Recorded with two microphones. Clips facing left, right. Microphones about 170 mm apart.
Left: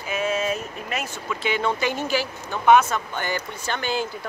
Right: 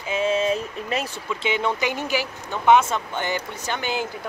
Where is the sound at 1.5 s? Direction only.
15° right (ahead or behind).